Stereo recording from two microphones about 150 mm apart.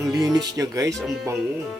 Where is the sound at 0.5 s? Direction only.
25° right (ahead or behind).